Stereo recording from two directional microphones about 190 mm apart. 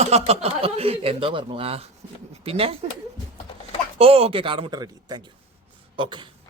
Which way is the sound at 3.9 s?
30° right (ahead or behind).